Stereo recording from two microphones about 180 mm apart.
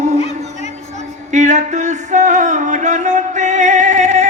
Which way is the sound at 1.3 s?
40° right (ahead or behind).